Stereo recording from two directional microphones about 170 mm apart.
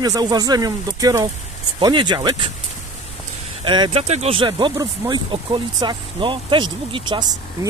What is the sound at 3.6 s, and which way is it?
Speech, 30° right (ahead or behind).